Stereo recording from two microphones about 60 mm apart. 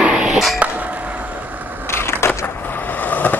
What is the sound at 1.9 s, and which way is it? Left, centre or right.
Skateboard, left.